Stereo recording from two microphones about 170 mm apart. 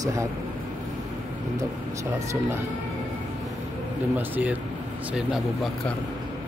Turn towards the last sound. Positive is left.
turn(degrees=-5)  # may be behind; listen again after turning